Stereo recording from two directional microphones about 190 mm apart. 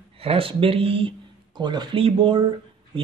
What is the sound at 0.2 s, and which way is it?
A woman's voice, 30° right (ahead or behind).